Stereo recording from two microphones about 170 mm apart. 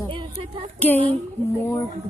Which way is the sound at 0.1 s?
30° right (ahead or behind).